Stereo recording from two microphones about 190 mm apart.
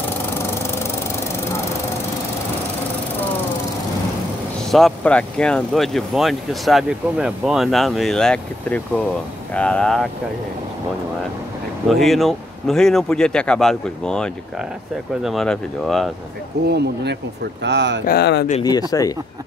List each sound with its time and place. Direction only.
4.6 s speech: centre (ahead or behind)
11.9 s speech: centre (ahead or behind)
16.6 s speech: 60° right (ahead or behind)
18.0 s speech: 60° left (ahead or behind)
18.6 s speech: 20° left (ahead or behind)